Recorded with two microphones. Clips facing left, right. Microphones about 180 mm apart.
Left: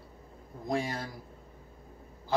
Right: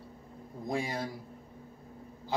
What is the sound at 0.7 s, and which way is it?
Speech, 15° right (ahead or behind).